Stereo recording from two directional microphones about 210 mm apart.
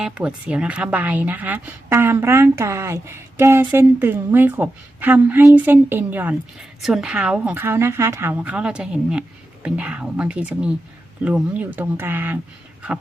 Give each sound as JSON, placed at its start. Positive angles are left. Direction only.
{"t": 0.0, "sound": "speech", "side_deg": -5}